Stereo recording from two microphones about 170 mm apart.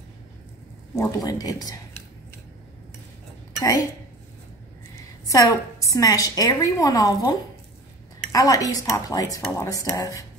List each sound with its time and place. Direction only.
0.9 s a woman's voice: 20° left (ahead or behind)
5.2 s a woman's voice: 20° left (ahead or behind)